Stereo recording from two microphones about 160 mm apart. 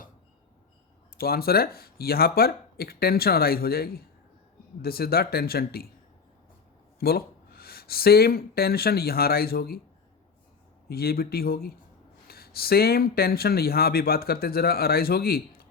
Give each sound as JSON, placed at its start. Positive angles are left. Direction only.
{"t": 1.2, "sound": "speech", "side_deg": 70}
{"t": 7.0, "sound": "speech", "side_deg": 70}
{"t": 10.8, "sound": "speech", "side_deg": 70}